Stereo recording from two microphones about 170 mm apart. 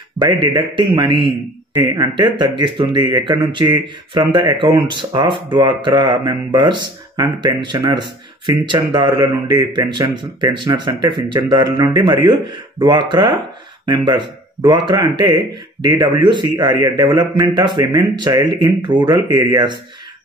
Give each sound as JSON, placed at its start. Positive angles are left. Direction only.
{"t": 0.2, "sound": "speech", "side_deg": -25}